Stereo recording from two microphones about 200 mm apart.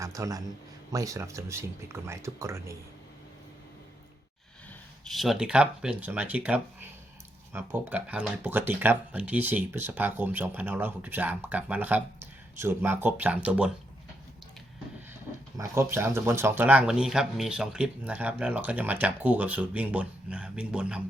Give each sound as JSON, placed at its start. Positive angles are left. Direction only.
{"t": 0.0, "sound": "a man's voice", "side_deg": -15}
{"t": 5.0, "sound": "speech", "side_deg": 0}
{"t": 15.5, "sound": "speech", "side_deg": -15}